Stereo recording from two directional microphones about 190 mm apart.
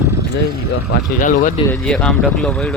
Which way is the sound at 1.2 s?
45° left (ahead or behind).